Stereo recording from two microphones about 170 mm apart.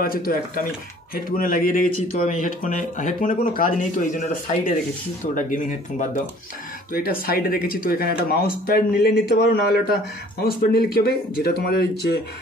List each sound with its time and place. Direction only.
0.0 s a man's voice: 60° left (ahead or behind)